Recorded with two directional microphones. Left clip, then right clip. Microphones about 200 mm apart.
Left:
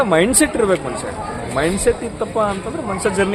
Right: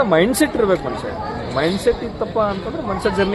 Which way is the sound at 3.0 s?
15° left (ahead or behind).